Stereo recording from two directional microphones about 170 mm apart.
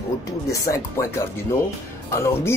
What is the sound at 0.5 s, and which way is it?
Speech, 20° left (ahead or behind).